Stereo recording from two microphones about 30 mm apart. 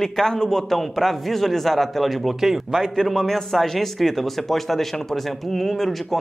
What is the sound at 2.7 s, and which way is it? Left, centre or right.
A man's voice, centre.